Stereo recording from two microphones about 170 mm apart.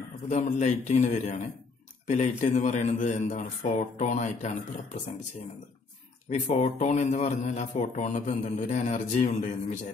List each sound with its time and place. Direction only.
0.3 s speech: 40° left (ahead or behind)
6.3 s speech: 40° left (ahead or behind)